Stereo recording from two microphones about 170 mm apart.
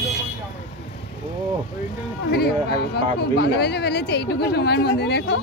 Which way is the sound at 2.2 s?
70° left (ahead or behind).